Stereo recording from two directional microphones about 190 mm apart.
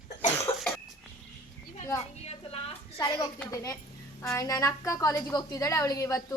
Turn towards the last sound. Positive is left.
turn(degrees=15)  # may be behind; listen again after turning